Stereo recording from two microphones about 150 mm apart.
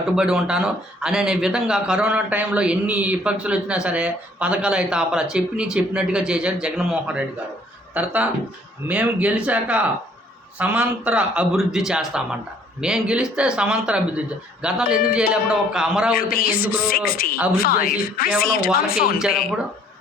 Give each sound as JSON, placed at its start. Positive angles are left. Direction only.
{"t": 0.2, "sound": "speech", "side_deg": -5}
{"t": 16.1, "sound": "a woman's voice", "side_deg": 75}